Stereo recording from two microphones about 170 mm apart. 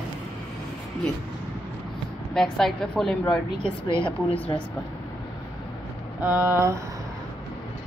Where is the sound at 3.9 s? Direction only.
30° left (ahead or behind).